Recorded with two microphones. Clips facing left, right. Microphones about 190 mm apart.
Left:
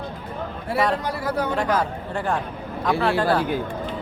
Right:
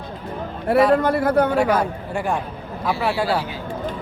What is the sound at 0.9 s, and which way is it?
Speech, 55° right (ahead or behind).